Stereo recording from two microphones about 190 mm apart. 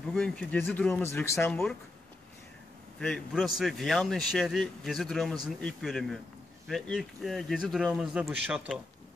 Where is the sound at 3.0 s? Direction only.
Centre (ahead or behind).